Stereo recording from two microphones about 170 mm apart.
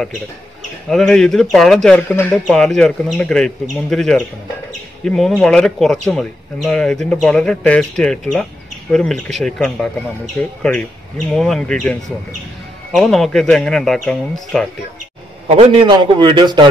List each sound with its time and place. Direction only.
0.8 s speech: 5° left (ahead or behind)
15.4 s a man's voice: 35° right (ahead or behind)